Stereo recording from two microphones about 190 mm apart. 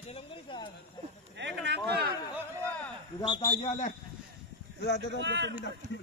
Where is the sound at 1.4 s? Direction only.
65° right (ahead or behind).